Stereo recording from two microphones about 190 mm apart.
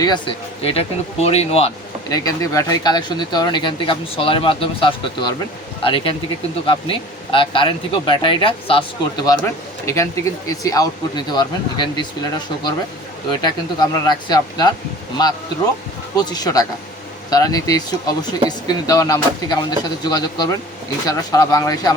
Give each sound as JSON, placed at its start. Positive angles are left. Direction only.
{"t": 0.0, "sound": "speech", "side_deg": 25}
{"t": 2.0, "sound": "speech", "side_deg": 20}
{"t": 13.4, "sound": "speech", "side_deg": 20}
{"t": 16.1, "sound": "speech", "side_deg": 20}